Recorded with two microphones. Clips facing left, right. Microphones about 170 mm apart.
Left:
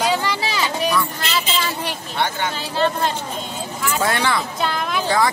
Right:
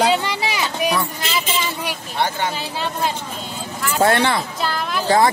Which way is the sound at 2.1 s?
35° right (ahead or behind).